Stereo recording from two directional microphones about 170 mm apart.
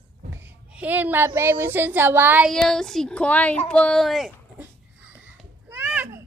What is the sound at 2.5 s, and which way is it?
Speech, 5° left (ahead or behind).